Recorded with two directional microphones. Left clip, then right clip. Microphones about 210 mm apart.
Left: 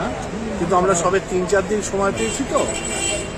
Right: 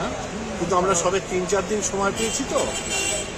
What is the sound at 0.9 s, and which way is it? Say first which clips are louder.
Speech: left 3 dB; centre (ahead or behind).